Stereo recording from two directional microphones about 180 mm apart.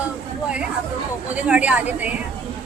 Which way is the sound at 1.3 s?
10° right (ahead or behind).